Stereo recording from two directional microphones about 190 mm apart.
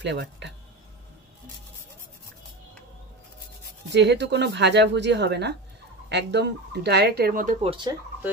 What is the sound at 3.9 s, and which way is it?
Speech, 65° right (ahead or behind).